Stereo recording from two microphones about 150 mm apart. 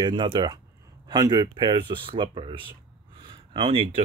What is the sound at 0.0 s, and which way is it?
Speech, 35° right (ahead or behind).